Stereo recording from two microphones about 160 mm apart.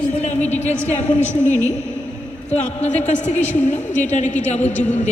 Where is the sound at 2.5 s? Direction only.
45° left (ahead or behind).